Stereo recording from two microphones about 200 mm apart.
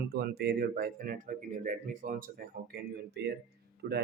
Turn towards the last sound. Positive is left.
turn(degrees=-55)  # may be behind; listen again after turning